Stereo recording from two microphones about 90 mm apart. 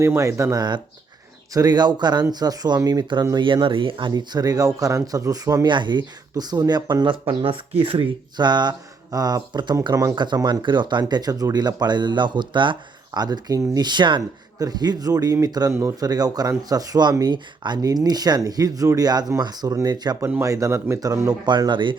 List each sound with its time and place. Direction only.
0.0 s speech: 30° right (ahead or behind)
0.5 s speech: 55° right (ahead or behind)
3.3 s speech: 65° right (ahead or behind)
4.1 s speech: 50° right (ahead or behind)
5.6 s speech: 60° right (ahead or behind); by 8.1 s 80° right
8.4 s speech: 55° right (ahead or behind)
9.9 s speech: 35° right (ahead or behind)
10.3 s speech: 55° right (ahead or behind)
13.1 s speech: 50° right (ahead or behind)
14.6 s speech: 45° right (ahead or behind)
15.7 s speech: 30° right (ahead or behind)
16.0 s speech: 45° right (ahead or behind)